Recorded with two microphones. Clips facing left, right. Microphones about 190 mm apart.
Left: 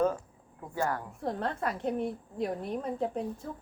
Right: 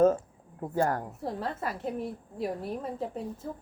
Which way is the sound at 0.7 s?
45° right (ahead or behind).